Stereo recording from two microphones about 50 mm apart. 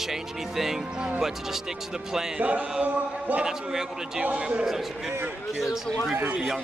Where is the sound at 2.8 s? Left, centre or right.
Right.